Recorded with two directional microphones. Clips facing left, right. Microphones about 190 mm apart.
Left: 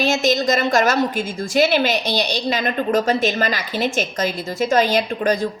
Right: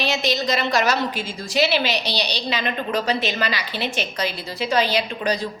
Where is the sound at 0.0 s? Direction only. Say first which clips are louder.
Left 5 dB; 45° left (ahead or behind).